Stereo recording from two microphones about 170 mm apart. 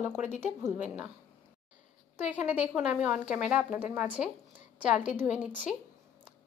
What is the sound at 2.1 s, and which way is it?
Speech, 10° right (ahead or behind).